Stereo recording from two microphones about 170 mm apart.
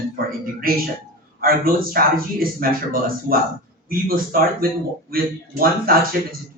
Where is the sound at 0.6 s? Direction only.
60° right (ahead or behind).